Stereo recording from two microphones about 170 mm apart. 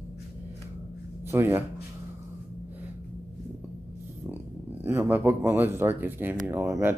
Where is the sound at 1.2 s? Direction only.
15° right (ahead or behind).